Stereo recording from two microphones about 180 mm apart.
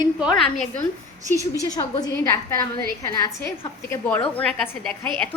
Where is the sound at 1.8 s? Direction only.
20° left (ahead or behind).